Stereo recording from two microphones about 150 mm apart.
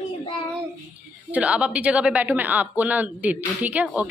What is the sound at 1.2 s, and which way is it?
A woman's voice, 10° right (ahead or behind).